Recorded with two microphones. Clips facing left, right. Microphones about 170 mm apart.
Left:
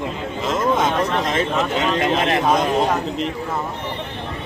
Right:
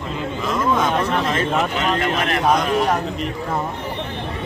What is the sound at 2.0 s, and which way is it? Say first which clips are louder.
Speech: left 2 dB; 25° left (ahead or behind).